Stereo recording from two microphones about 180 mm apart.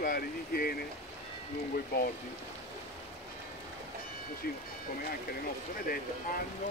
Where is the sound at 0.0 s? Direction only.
55° left (ahead or behind).